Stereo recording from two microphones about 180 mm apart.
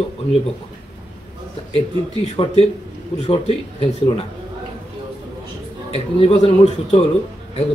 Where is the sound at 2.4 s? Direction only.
25° left (ahead or behind).